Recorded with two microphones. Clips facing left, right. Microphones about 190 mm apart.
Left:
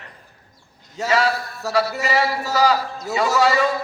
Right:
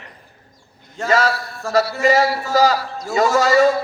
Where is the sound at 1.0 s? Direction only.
45° right (ahead or behind).